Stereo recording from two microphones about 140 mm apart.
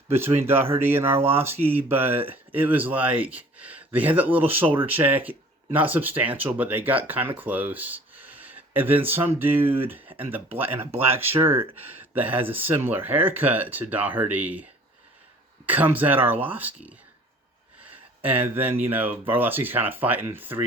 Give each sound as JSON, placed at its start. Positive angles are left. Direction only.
{"t": 0.3, "sound": "speech", "side_deg": -15}
{"t": 15.6, "sound": "speech", "side_deg": -10}